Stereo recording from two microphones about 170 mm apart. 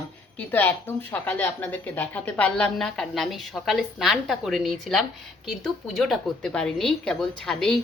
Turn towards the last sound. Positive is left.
turn(degrees=0)  # may be behind; listen again after turning